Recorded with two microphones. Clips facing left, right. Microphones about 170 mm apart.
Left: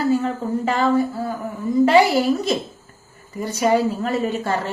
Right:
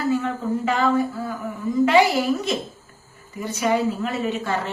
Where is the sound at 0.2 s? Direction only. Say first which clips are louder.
Left 2 dB; 35° left (ahead or behind).